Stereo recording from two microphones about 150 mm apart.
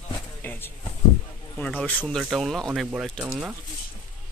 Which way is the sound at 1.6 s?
10° left (ahead or behind).